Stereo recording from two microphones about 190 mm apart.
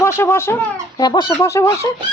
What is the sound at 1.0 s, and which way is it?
Chicken, 20° left (ahead or behind).